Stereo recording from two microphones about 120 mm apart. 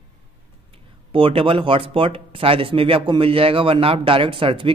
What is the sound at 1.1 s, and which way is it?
Speech, 50° right (ahead or behind).